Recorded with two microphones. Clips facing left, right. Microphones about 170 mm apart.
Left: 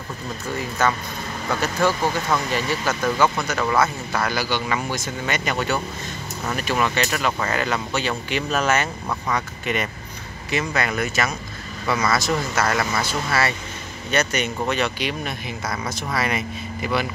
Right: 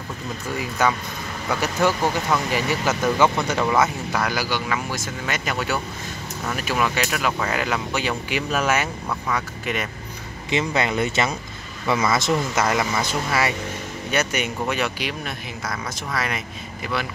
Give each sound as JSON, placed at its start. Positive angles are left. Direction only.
{"t": 0.6, "sound": "speech", "side_deg": -10}
{"t": 10.5, "sound": "speech", "side_deg": -20}